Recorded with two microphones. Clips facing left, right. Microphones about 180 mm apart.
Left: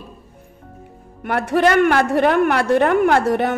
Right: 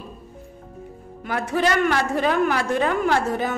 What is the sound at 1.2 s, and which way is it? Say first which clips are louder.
A woman's voice: left 6 dB; 60° left (ahead or behind).